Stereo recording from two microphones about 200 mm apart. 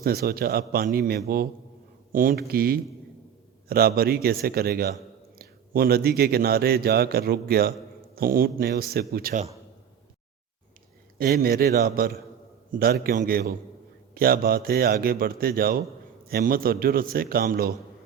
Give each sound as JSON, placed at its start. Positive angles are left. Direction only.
{"t": 0.0, "sound": "a man's voice", "side_deg": -50}
{"t": 11.2, "sound": "a man's voice", "side_deg": -50}